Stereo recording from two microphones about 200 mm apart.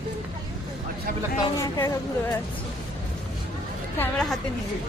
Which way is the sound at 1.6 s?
15° left (ahead or behind).